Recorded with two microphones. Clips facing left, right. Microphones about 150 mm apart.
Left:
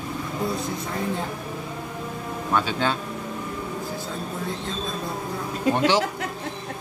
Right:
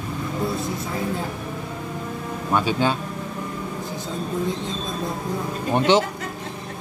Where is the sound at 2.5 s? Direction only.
10° right (ahead or behind).